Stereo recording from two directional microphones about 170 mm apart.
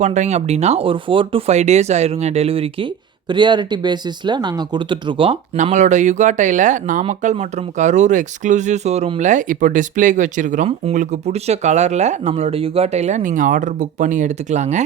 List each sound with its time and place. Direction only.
0.0 s speech: 40° right (ahead or behind)
5.6 s speech: 45° right (ahead or behind)